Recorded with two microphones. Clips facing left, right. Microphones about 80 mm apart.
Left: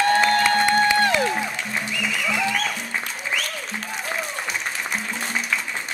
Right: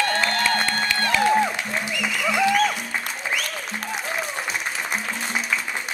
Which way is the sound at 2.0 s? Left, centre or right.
Centre.